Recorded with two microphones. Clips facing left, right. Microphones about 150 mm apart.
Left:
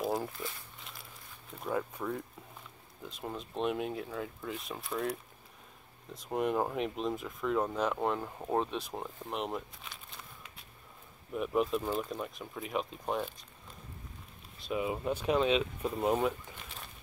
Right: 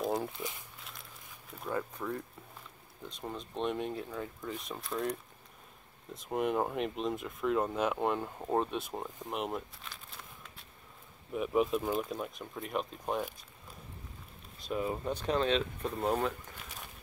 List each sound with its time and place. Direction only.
0.0 s walk: centre (ahead or behind)
0.3 s speech: 20° right (ahead or behind)
1.5 s speech: 5° left (ahead or behind)
6.1 s speech: centre (ahead or behind)
14.6 s speech: 5° left (ahead or behind)